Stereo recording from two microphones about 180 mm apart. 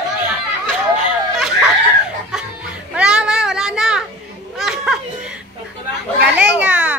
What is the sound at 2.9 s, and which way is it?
Child singing, 5° right (ahead or behind).